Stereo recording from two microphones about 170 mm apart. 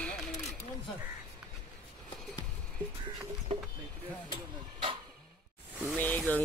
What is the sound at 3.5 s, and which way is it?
Vehicle, 30° right (ahead or behind).